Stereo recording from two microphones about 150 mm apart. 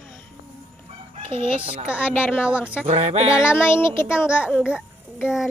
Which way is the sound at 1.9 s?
10° right (ahead or behind).